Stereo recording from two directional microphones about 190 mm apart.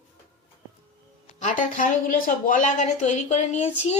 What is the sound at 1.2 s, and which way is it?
Speech, 40° left (ahead or behind).